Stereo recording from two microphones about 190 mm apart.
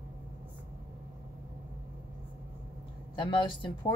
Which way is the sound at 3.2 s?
25° left (ahead or behind).